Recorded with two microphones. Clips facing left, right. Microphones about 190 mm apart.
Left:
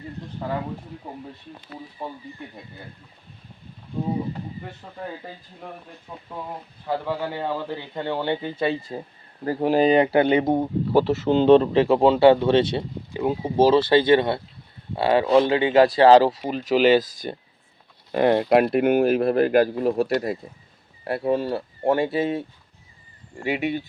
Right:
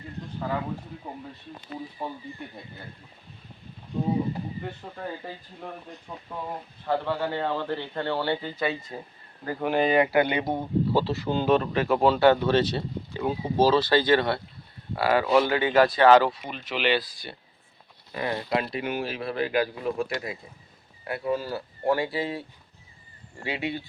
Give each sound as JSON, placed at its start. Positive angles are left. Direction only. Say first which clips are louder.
{"t": 6.1, "sound": "speech", "louder": "left 1 dB", "side_deg": 5}
{"t": 18.1, "sound": "speech", "louder": "left 10 dB", "side_deg": 60}